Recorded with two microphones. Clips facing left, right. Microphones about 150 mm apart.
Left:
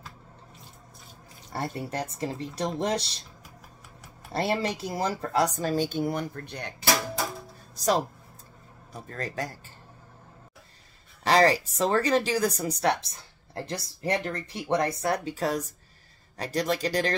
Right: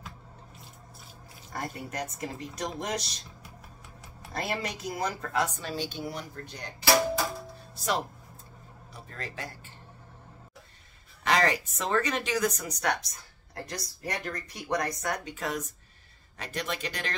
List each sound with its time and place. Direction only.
1.5 s speech: 30° left (ahead or behind)
4.3 s speech: 30° left (ahead or behind); by 6.7 s 60° left (ahead or behind)
7.7 s music: 40° left (ahead or behind)
8.9 s speech: 40° left (ahead or behind)
11.2 s speech: 35° left (ahead or behind)